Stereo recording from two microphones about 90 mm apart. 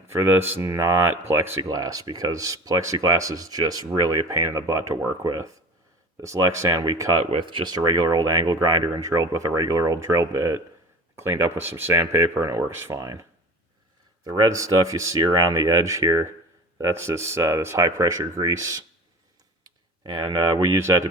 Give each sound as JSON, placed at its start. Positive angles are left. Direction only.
{"t": 0.1, "sound": "speech", "side_deg": -25}
{"t": 1.7, "sound": "speech", "side_deg": -45}
{"t": 6.7, "sound": "speech", "side_deg": -50}
{"t": 7.2, "sound": "speech", "side_deg": -65}
{"t": 14.3, "sound": "speech", "side_deg": -45}
{"t": 19.6, "sound": "speech", "side_deg": -55}
{"t": 20.7, "sound": "speech", "side_deg": -35}